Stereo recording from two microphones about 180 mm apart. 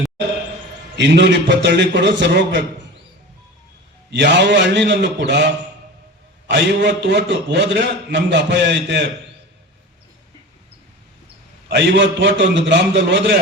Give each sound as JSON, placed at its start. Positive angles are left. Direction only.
{"t": 0.9, "sound": "a man's voice", "side_deg": -75}
{"t": 4.1, "sound": "a man's voice", "side_deg": -75}
{"t": 11.7, "sound": "a man's voice", "side_deg": -75}